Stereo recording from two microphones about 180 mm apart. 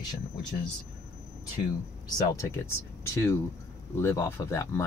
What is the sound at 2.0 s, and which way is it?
Speech, 20° left (ahead or behind).